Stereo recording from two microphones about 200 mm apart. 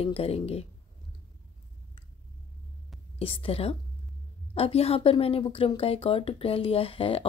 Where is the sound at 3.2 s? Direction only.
30° left (ahead or behind).